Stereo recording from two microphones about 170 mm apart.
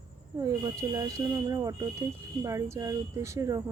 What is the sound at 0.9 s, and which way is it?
Speech, 20° right (ahead or behind).